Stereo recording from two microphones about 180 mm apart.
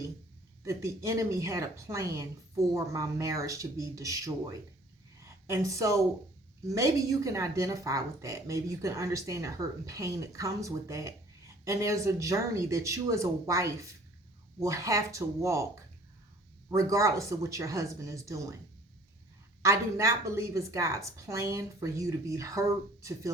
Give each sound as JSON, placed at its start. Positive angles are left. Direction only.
{"t": 0.6, "sound": "a woman's voice", "side_deg": -15}
{"t": 5.2, "sound": "a sound", "side_deg": -15}
{"t": 6.7, "sound": "a woman's voice", "side_deg": -20}
{"t": 19.6, "sound": "a woman's voice", "side_deg": -15}